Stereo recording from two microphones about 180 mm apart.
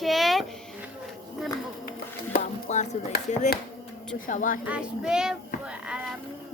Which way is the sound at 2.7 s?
40° left (ahead or behind).